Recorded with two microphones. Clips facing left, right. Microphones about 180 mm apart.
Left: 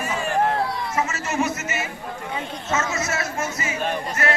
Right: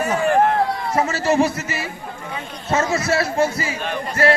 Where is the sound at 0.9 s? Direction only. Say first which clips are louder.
Right 7 dB; 35° right (ahead or behind).